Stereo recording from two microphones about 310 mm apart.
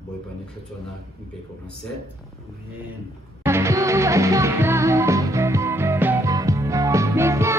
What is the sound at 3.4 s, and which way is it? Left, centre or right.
Music, centre.